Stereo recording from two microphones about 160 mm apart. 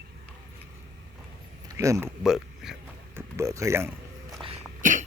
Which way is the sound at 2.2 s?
Centre (ahead or behind).